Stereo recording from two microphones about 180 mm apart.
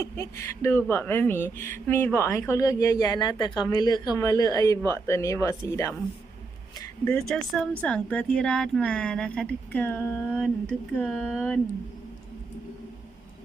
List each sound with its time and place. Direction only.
0.0 s speech: 15° left (ahead or behind)
7.0 s speech: 5° left (ahead or behind)